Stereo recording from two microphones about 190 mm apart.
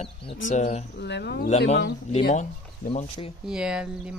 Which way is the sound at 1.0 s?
60° left (ahead or behind).